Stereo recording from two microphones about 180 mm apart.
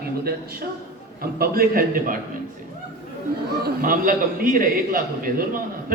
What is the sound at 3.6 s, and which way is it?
A man's voice, 50° right (ahead or behind).